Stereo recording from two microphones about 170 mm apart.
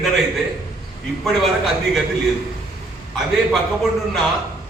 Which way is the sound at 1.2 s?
Centre (ahead or behind).